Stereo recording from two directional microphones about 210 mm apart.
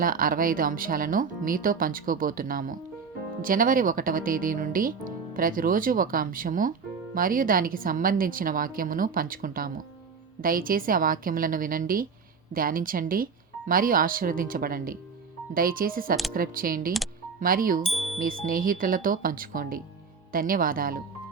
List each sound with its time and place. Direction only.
0.0 s speech: 40° right (ahead or behind)
17.8 s music: centre (ahead or behind)
18.2 s speech: 40° right (ahead or behind)